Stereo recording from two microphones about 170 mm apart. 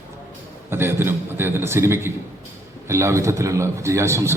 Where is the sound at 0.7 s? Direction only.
15° right (ahead or behind).